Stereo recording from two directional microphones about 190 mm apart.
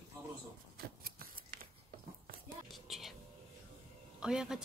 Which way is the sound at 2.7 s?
Centre (ahead or behind).